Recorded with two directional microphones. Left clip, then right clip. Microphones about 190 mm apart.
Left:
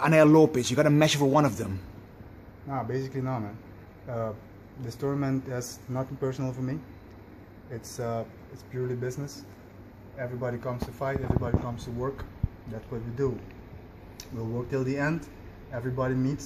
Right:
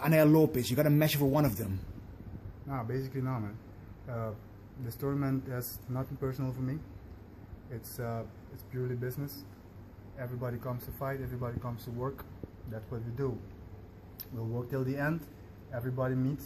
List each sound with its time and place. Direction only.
0.0 s a man's voice: 5° right (ahead or behind)
2.7 s speech: 5° left (ahead or behind)
4.8 s speech: 10° left (ahead or behind)
14.5 s speech: 5° left (ahead or behind)